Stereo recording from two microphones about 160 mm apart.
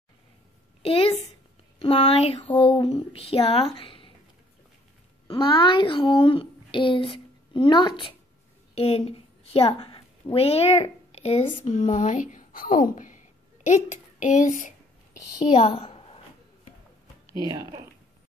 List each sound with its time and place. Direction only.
0.8 s a sound: 35° left (ahead or behind)
2.5 s speech: 30° left (ahead or behind)
2.9 s a sound: 35° left (ahead or behind)
5.3 s a child's voice: 30° left (ahead or behind); by 14.7 s 50° left (ahead or behind)
15.1 s a woman's voice: 25° left (ahead or behind)
17.3 s speech: 25° right (ahead or behind)